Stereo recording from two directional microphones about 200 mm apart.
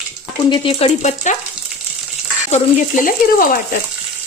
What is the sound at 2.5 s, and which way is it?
Speech, 40° left (ahead or behind).